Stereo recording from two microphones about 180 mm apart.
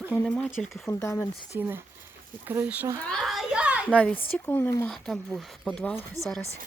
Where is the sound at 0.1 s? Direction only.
10° left (ahead or behind).